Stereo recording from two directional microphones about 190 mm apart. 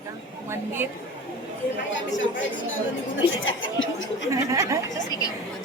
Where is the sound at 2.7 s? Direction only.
90° left.